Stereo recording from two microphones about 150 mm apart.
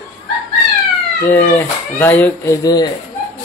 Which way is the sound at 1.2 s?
15° left (ahead or behind).